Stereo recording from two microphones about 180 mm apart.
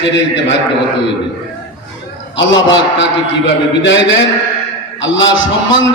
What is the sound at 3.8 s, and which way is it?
A man's voice, 90° left.